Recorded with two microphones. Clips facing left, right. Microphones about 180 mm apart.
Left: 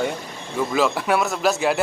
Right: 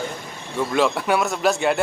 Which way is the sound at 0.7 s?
Centre (ahead or behind).